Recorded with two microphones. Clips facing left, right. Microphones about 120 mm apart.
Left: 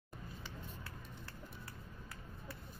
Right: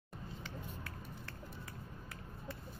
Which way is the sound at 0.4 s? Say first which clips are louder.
Right 4 dB; 15° left (ahead or behind).